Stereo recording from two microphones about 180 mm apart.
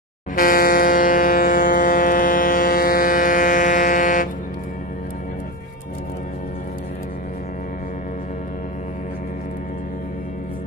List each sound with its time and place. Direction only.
0.4 s vehicle: 50° left (ahead or behind)